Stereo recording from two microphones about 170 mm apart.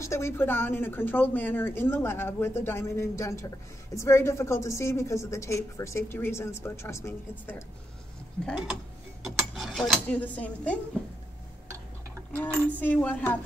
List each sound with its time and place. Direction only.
0.0 s speech: 15° left (ahead or behind)
8.5 s speech: 5° right (ahead or behind)
9.2 s cutlery: centre (ahead or behind)
10.0 s speech: 10° left (ahead or behind)
12.8 s speech: 10° left (ahead or behind)